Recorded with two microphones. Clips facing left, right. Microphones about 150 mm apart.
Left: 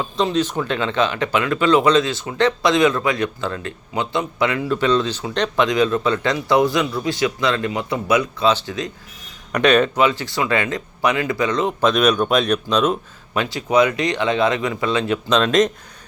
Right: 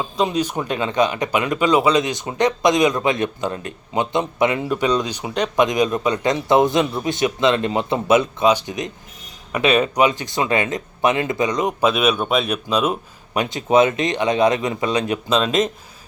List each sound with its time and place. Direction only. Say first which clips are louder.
0.0 s speech: left 1 dB; 15° right (ahead or behind)
9.5 s speech: left 2 dB; 5° right (ahead or behind)
15.3 s speech: left 3 dB; 5° right (ahead or behind)